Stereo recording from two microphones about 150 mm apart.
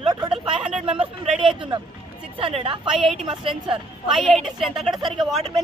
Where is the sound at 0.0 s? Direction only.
30° right (ahead or behind).